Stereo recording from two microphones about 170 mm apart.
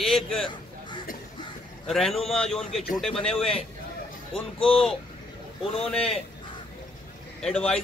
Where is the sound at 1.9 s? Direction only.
Centre (ahead or behind).